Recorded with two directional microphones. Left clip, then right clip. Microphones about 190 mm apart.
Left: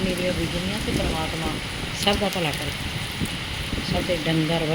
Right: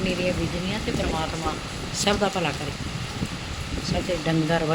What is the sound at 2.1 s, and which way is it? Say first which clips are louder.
Speech: left 1 dB; 15° right (ahead or behind).